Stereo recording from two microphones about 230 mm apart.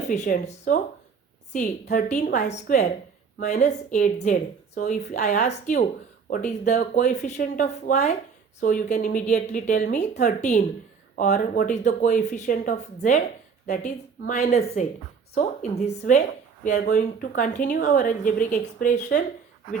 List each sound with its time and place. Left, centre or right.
0.0 s speech: left